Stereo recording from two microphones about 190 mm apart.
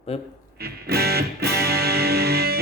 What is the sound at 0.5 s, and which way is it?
Music, 55° right (ahead or behind).